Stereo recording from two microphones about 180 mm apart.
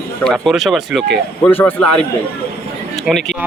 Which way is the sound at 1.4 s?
10° left (ahead or behind).